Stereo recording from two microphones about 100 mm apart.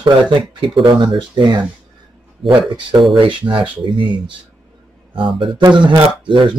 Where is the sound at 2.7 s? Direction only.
55° right (ahead or behind).